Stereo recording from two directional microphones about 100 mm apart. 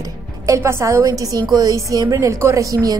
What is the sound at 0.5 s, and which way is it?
A woman's voice, 30° right (ahead or behind).